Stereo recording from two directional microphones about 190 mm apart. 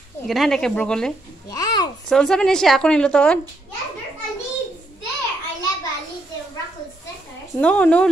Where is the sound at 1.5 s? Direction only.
20° left (ahead or behind).